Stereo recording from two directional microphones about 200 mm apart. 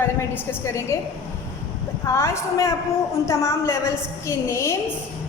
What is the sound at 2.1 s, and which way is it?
A woman's voice, 15° left (ahead or behind).